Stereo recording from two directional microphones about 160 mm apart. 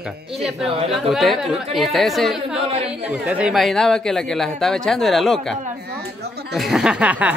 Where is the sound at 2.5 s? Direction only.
40° right (ahead or behind).